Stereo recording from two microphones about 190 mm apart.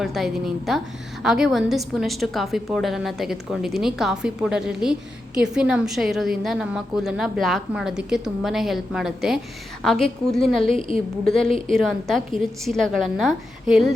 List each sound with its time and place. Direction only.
0.0 s a woman's voice: centre (ahead or behind)
10.8 s a woman's voice: 30° left (ahead or behind)
11.3 s a woman's voice: centre (ahead or behind)